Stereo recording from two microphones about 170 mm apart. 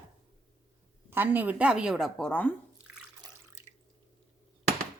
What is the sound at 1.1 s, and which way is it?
A woman's voice, 10° right (ahead or behind).